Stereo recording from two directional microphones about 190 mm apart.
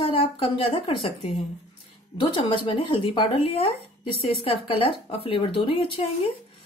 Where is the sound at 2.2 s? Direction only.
25° left (ahead or behind).